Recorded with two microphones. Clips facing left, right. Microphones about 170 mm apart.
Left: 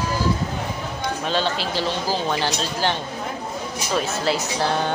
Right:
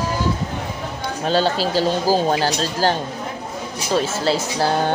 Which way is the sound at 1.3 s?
40° right (ahead or behind).